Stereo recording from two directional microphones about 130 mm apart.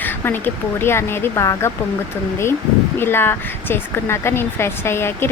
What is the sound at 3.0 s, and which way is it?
Speech, 15° left (ahead or behind).